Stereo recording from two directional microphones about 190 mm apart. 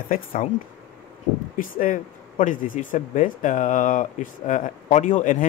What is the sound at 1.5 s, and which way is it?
Speech, 45° left (ahead or behind).